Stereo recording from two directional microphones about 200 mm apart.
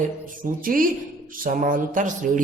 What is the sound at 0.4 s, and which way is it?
A woman's voice, 45° right (ahead or behind).